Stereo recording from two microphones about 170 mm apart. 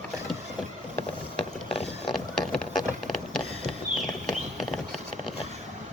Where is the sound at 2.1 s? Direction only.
5° left (ahead or behind).